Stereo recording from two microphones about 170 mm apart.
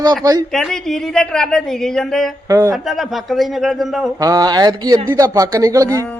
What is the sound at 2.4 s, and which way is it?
Speech, 20° right (ahead or behind).